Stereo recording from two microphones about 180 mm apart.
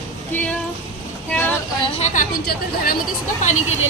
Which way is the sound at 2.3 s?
55° left (ahead or behind).